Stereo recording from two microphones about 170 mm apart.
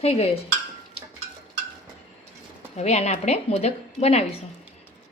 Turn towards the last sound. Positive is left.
turn(degrees=40)  # may be behind; listen again after turning